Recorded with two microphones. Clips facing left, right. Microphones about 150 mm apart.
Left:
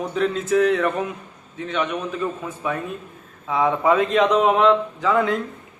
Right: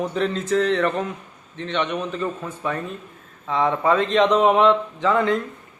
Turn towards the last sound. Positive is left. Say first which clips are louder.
# even
turn(degrees=5)  # may be behind; listen again after turning